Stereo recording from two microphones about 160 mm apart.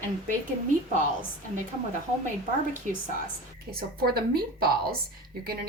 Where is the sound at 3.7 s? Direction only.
70° right (ahead or behind).